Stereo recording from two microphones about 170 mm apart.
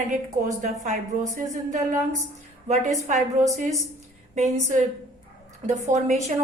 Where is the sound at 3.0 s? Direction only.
45° right (ahead or behind).